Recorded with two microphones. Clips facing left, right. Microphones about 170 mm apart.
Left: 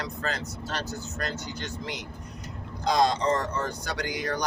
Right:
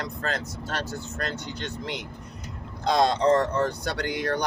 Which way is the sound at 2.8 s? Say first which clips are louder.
Right 2 dB; 55° right (ahead or behind).